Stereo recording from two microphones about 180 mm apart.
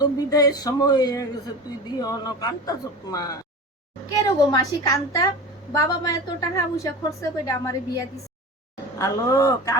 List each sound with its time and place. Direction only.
0.0 s a woman's voice: 20° left (ahead or behind)
4.5 s a woman's voice: 20° left (ahead or behind)